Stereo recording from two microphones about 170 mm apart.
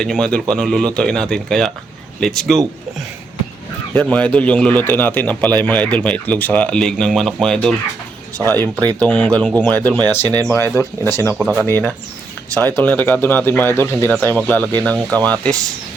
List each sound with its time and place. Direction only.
0.0 s speech: 5° left (ahead or behind)
4.1 s speech: 5° left (ahead or behind)
8.4 s speech: 20° right (ahead or behind)
8.9 s speech: 10° left (ahead or behind)